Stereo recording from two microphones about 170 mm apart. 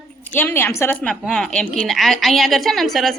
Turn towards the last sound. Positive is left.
turn(degrees=0)  # may be behind; listen again after turning